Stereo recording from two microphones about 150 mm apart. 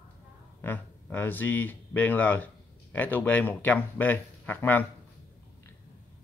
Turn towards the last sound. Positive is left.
turn(degrees=10)  # may be behind; listen again after turning